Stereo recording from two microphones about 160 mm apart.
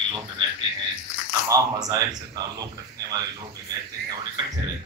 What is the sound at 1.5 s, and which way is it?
Speech, 20° right (ahead or behind).